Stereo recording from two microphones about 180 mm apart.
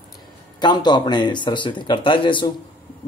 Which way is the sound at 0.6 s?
25° left (ahead or behind).